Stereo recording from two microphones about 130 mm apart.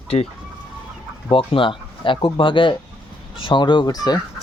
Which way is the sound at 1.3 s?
40° left (ahead or behind).